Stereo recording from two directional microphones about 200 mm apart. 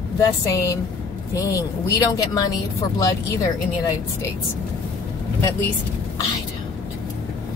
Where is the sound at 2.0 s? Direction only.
15° left (ahead or behind).